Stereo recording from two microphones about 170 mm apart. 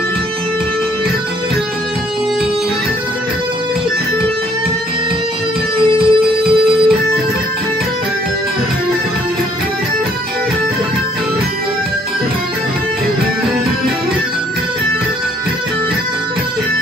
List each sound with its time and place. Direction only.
5.9 s music: 30° right (ahead or behind)